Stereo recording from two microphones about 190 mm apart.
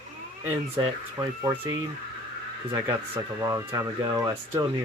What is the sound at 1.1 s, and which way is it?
Speech, 15° right (ahead or behind).